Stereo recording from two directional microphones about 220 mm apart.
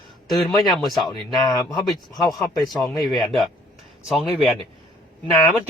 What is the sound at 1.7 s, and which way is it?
Speech, centre (ahead or behind).